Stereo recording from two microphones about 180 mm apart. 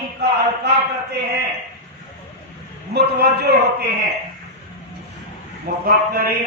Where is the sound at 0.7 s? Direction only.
65° right (ahead or behind).